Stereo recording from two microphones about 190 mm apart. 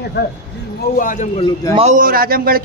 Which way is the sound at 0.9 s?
40° left (ahead or behind).